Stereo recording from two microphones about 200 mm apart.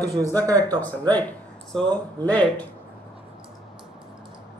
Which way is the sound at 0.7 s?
10° left (ahead or behind).